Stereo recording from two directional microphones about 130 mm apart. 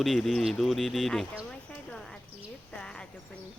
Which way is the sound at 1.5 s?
5° left (ahead or behind).